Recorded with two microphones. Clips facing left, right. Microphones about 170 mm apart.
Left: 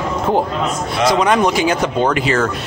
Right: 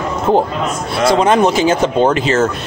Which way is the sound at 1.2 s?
25° right (ahead or behind).